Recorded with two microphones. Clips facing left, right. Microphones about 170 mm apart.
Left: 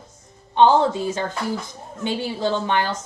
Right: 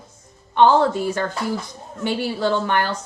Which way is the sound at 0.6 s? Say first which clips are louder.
Right 1 dB; 20° left (ahead or behind).